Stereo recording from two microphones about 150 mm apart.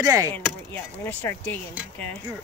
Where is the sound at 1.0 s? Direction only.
10° left (ahead or behind).